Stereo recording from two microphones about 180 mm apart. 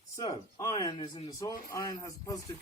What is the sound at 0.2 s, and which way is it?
Speech, 20° left (ahead or behind).